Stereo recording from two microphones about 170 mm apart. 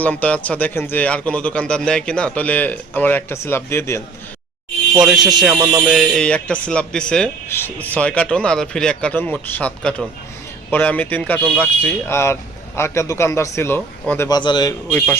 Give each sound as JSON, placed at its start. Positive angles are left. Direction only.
{"t": 0.0, "sound": "a man's voice", "side_deg": 10}
{"t": 4.9, "sound": "a man's voice", "side_deg": -5}
{"t": 14.3, "sound": "a man's voice", "side_deg": 25}
{"t": 14.8, "sound": "a man's voice", "side_deg": 10}